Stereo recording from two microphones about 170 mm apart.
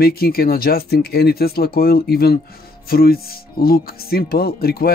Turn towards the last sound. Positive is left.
turn(degrees=65)  # may be behind; listen again after turning